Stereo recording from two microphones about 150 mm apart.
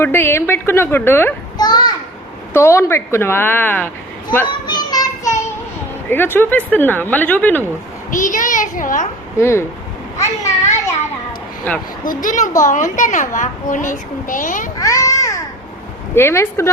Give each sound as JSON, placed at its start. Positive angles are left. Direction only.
{"t": 0.0, "sound": "a woman's voice", "side_deg": 15}
{"t": 1.5, "sound": "children playing", "side_deg": 30}
{"t": 2.5, "sound": "a woman's voice", "side_deg": 20}
{"t": 4.6, "sound": "child singing", "side_deg": 30}
{"t": 6.1, "sound": "a woman's voice", "side_deg": 15}
{"t": 8.1, "sound": "a child's voice", "side_deg": 60}
{"t": 9.4, "sound": "a woman's voice", "side_deg": 15}
{"t": 12.0, "sound": "a child's voice", "side_deg": 60}
{"t": 14.8, "sound": "a sound", "side_deg": 20}
{"t": 16.1, "sound": "a woman's voice", "side_deg": 15}